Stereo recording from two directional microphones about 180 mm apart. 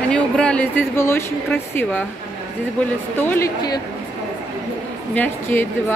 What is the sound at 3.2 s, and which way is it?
Speech, 10° left (ahead or behind).